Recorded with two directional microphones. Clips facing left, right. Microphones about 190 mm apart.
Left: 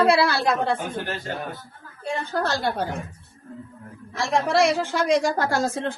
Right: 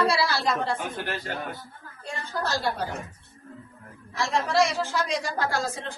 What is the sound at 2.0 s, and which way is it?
Speech, 65° left (ahead or behind).